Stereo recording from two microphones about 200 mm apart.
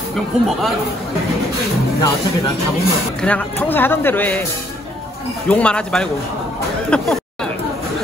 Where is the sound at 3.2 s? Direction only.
5° left (ahead or behind).